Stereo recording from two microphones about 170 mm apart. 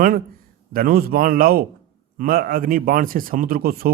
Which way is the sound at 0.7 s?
60° right (ahead or behind).